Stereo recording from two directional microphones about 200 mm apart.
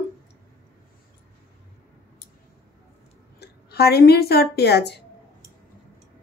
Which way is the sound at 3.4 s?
50° left (ahead or behind).